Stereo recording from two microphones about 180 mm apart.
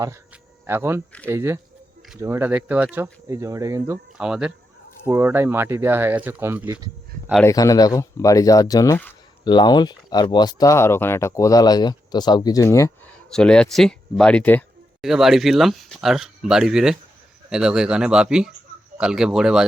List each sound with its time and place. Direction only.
0.7 s speech: 15° right (ahead or behind)
4.2 s speech: 5° right (ahead or behind)
7.4 s speech: 20° left (ahead or behind)
9.4 s speech: 25° left (ahead or behind)
13.3 s speech: 5° left (ahead or behind)